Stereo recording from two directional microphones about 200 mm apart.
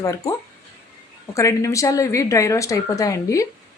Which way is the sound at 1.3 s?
15° left (ahead or behind).